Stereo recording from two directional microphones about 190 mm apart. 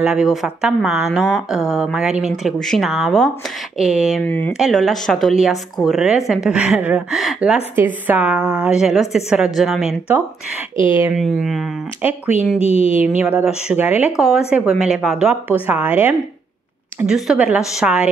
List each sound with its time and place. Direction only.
0.0 s a woman's voice: 5° right (ahead or behind)
4.3 s a woman's voice: 10° left (ahead or behind)
10.8 s speech: 25° left (ahead or behind)
11.1 s a woman's voice: centre (ahead or behind)
12.5 s speech: 30° left (ahead or behind)
13.2 s a woman's voice: 10° right (ahead or behind)